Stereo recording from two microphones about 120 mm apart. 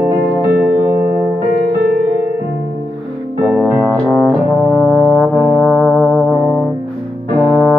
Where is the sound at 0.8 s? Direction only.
20° right (ahead or behind).